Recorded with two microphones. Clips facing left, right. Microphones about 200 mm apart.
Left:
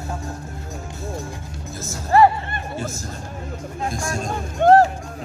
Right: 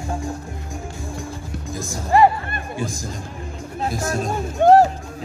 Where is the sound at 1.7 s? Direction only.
15° right (ahead or behind).